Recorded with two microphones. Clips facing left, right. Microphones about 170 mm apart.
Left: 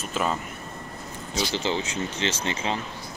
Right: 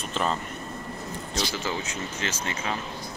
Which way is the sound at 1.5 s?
30° left (ahead or behind).